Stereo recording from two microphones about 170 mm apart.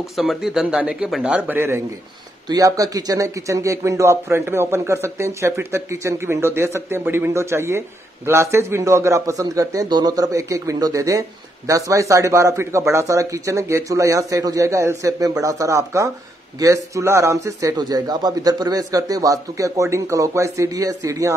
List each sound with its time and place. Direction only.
0.2 s a man's voice: centre (ahead or behind); by 21.4 s 20° right (ahead or behind)